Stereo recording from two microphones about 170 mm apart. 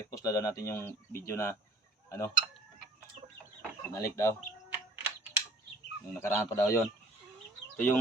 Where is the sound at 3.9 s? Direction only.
15° left (ahead or behind).